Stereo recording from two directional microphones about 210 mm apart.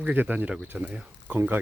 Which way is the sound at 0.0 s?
10° right (ahead or behind).